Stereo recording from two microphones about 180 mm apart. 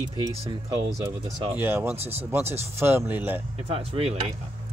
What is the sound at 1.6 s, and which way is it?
Speech, 10° right (ahead or behind).